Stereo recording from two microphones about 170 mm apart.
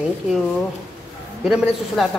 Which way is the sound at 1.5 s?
Centre (ahead or behind).